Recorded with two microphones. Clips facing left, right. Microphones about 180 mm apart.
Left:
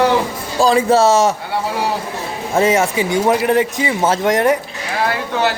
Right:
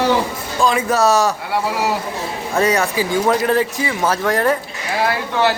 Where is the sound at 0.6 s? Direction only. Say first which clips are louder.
Left 4 dB; 30° left (ahead or behind).